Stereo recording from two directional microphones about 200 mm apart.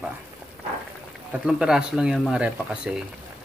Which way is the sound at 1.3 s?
5° right (ahead or behind).